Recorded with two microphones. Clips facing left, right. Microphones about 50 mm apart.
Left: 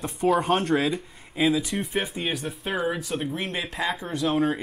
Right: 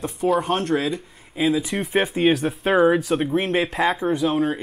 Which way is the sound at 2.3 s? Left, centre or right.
Right.